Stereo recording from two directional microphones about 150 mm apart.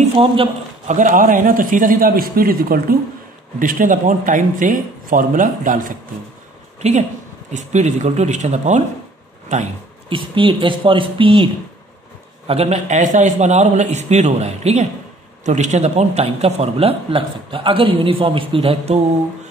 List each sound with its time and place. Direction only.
0.0 s a man's voice: 35° right (ahead or behind)
0.8 s a man's voice: 55° right (ahead or behind); by 3.0 s 75° right (ahead or behind)
3.5 s speech: 65° right (ahead or behind)
6.8 s a woman's voice: 50° right (ahead or behind)
10.0 s a man's voice: 35° right (ahead or behind)